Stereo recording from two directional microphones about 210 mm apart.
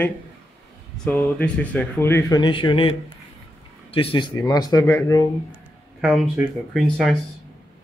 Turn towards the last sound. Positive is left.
turn(degrees=0)  # may be behind; listen again after turning